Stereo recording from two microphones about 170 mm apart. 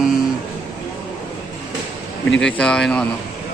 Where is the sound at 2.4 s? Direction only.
5° left (ahead or behind).